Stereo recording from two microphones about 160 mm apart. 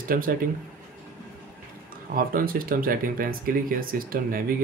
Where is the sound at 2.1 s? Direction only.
60° right (ahead or behind).